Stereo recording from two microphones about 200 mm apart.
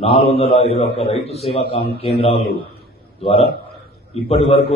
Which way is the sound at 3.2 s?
30° left (ahead or behind).